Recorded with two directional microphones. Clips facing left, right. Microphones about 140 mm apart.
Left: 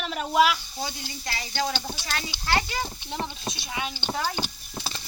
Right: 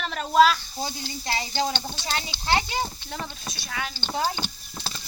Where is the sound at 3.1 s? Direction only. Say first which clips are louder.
Left 3 dB; 25° left (ahead or behind).